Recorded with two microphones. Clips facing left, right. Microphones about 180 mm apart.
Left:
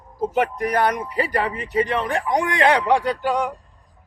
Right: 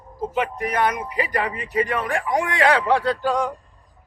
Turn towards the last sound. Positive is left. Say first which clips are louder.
# even
turn(degrees=10)  # may be behind; listen again after turning